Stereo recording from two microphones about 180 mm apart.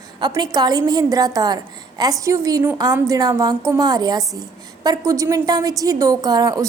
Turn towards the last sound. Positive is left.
turn(degrees=-20)  # may be behind; listen again after turning